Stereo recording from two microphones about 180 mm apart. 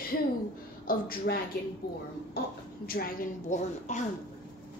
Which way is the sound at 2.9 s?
55° left (ahead or behind).